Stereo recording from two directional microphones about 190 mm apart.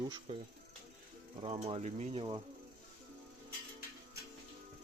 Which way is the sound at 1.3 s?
30° right (ahead or behind).